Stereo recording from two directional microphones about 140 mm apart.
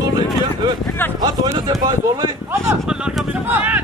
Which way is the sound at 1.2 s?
30° right (ahead or behind).